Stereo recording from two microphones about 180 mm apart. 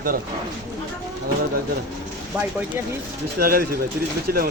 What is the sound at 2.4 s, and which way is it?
Speech, 10° right (ahead or behind).